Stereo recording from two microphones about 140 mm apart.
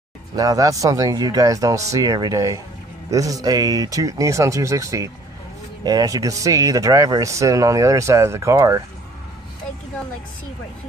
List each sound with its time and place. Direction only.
0.4 s speech: 25° right (ahead or behind)